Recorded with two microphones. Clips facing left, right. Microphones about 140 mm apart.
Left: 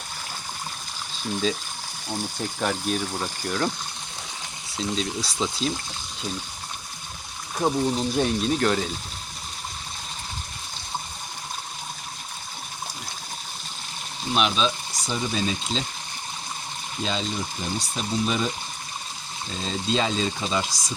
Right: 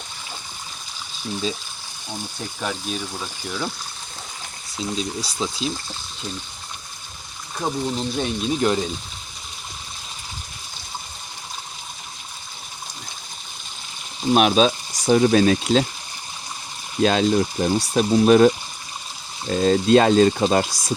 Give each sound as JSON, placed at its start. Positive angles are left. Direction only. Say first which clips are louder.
{"t": 2.0, "sound": "speech", "louder": "left 2 dB", "side_deg": 10}
{"t": 3.4, "sound": "speech", "louder": "left 2 dB", "side_deg": -10}
{"t": 4.8, "sound": "speech", "louder": "right 1 dB", "side_deg": -5}
{"t": 7.6, "sound": "speech", "louder": "left 2 dB", "side_deg": 10}
{"t": 8.5, "sound": "speech", "louder": "right 5 dB", "side_deg": -15}
{"t": 14.3, "sound": "speech", "louder": "right 7 dB", "side_deg": -55}
{"t": 17.0, "sound": "speech", "louder": "right 11 dB", "side_deg": -70}